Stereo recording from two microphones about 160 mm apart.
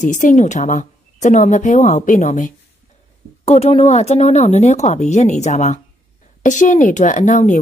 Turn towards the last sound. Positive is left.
turn(degrees=50)  # may be behind; listen again after turning